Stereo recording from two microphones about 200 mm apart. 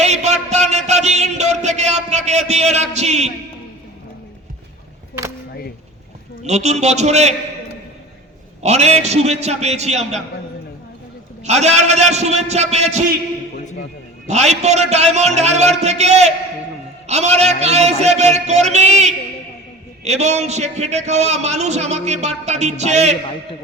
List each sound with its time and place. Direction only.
0.0 s a sound: 35° right (ahead or behind)
6.4 s a man's voice: 35° right (ahead or behind)
8.6 s a man's voice: 35° right (ahead or behind)
11.4 s a man's voice: 35° right (ahead or behind)
14.3 s a man's voice: 35° right (ahead or behind)